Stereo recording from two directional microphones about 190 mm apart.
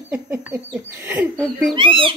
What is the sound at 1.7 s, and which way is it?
Speech, 25° right (ahead or behind).